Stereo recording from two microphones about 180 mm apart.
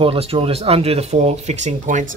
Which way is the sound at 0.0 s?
30° right (ahead or behind).